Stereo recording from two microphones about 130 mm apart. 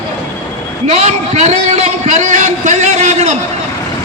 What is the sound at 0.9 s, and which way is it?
A man's voice, 60° right (ahead or behind).